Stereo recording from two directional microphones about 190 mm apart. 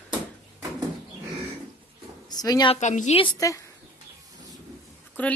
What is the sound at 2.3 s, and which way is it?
Speech, 20° left (ahead or behind).